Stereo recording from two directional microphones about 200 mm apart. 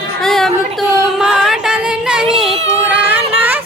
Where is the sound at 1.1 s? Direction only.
Centre (ahead or behind).